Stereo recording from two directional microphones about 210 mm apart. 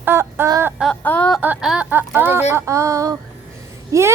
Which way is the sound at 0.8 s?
5° left (ahead or behind).